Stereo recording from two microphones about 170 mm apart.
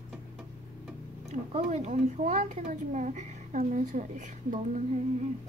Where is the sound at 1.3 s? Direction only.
40° right (ahead or behind).